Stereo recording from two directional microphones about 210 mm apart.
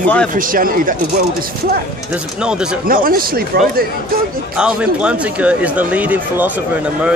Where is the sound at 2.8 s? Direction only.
45° right (ahead or behind).